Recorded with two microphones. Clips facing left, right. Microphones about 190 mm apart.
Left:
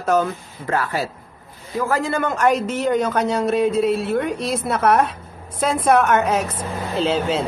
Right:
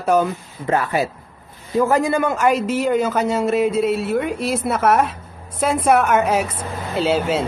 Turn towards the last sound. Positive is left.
turn(degrees=-10)  # may be behind; listen again after turning